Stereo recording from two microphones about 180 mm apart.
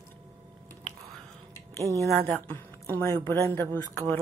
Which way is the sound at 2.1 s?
10° left (ahead or behind).